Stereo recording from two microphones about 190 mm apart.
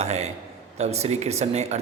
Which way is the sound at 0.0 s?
35° right (ahead or behind).